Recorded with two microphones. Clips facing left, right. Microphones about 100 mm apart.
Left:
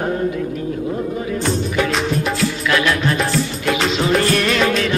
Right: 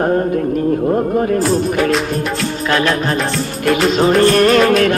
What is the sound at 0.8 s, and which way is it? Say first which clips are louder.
Music: right 8 dB; 45° right (ahead or behind).